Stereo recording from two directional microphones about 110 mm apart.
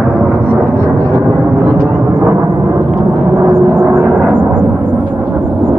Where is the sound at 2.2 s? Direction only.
25° right (ahead or behind).